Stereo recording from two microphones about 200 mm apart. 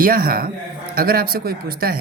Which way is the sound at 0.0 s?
45° right (ahead or behind).